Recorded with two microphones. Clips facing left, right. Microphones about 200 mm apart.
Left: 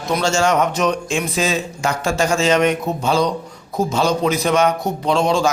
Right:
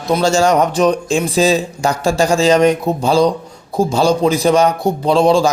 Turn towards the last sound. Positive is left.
turn(degrees=-35)  # may be behind; listen again after turning